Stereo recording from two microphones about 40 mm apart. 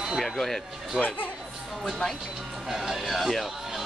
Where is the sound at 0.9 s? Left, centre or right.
Right.